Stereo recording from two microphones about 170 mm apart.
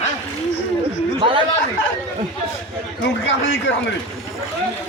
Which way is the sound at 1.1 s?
30° right (ahead or behind).